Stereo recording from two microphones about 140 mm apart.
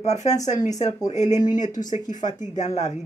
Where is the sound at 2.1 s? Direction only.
60° left (ahead or behind).